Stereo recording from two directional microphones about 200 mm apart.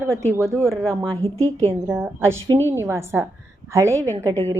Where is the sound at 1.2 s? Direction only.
30° right (ahead or behind).